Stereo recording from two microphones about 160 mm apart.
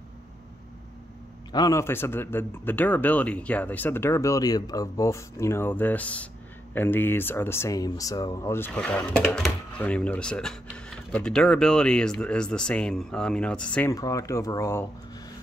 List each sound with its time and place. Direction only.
1.5 s speech: 20° left (ahead or behind)
13.9 s speech: 20° left (ahead or behind)